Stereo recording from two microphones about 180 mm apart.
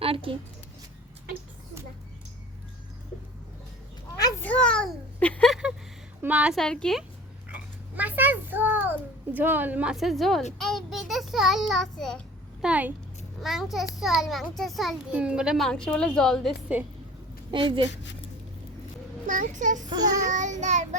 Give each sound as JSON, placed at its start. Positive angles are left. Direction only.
{"t": 0.0, "sound": "a sound", "side_deg": -30}
{"t": 4.4, "sound": "a sound", "side_deg": 5}
{"t": 6.2, "sound": "a child's voice", "side_deg": -5}
{"t": 7.5, "sound": "a child's voice", "side_deg": -10}
{"t": 12.6, "sound": "a child's voice", "side_deg": -10}
{"t": 17.5, "sound": "a woman's voice", "side_deg": -25}
{"t": 17.9, "sound": "speech", "side_deg": 80}
{"t": 19.3, "sound": "speech", "side_deg": -45}
{"t": 20.3, "sound": "child singing", "side_deg": -45}